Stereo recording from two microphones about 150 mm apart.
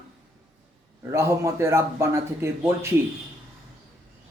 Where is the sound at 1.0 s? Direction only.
20° right (ahead or behind).